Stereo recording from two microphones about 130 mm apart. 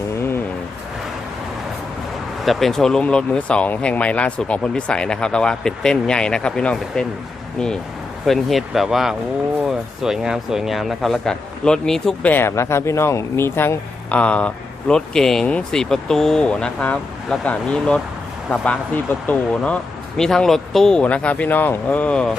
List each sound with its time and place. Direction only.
0.2 s a sound: 15° left (ahead or behind)
2.4 s speech: centre (ahead or behind)
8.3 s speech: centre (ahead or behind)